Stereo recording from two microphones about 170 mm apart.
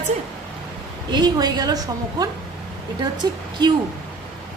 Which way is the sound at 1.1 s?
25° right (ahead or behind).